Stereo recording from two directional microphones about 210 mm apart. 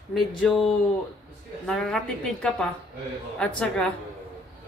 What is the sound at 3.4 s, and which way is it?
Speech, 5° left (ahead or behind).